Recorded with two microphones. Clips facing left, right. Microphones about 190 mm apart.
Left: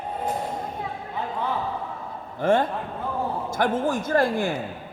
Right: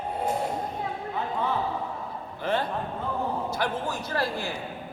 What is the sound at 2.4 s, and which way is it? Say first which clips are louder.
Speech: left 6 dB; 50° left (ahead or behind).